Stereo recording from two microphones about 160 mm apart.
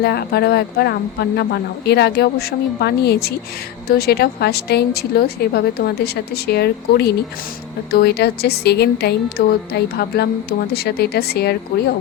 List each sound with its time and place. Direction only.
0.0 s a woman's voice: 90° left
9.4 s speech: 70° left (ahead or behind)
9.7 s speech: 90° left